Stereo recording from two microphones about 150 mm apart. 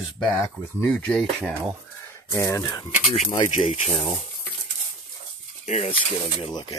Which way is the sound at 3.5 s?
50° left (ahead or behind).